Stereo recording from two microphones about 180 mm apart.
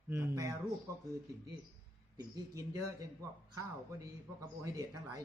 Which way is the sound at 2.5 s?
15° right (ahead or behind).